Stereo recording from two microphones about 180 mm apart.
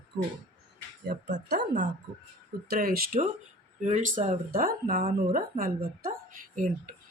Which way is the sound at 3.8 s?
45° right (ahead or behind).